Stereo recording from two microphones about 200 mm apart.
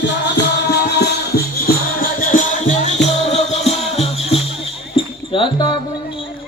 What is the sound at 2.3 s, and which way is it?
Music, 40° left (ahead or behind).